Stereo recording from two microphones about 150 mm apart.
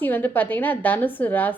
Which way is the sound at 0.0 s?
10° left (ahead or behind).